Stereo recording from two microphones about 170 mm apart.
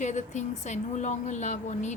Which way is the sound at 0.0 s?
45° left (ahead or behind).